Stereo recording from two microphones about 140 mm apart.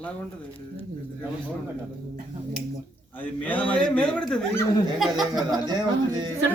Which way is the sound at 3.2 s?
10° left (ahead or behind).